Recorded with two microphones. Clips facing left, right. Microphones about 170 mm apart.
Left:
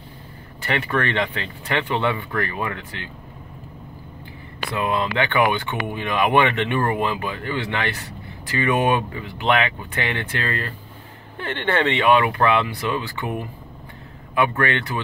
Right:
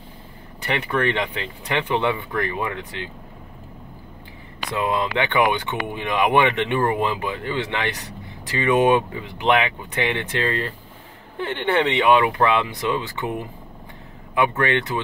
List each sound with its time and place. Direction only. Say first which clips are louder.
0.6 s speech: even; 15° right (ahead or behind)
4.6 s speech: even; 20° right (ahead or behind)
14.3 s speech: right 1 dB; 20° right (ahead or behind)